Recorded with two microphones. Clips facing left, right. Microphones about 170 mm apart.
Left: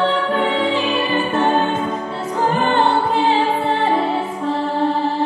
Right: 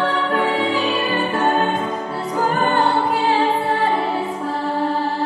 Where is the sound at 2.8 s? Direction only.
Centre (ahead or behind).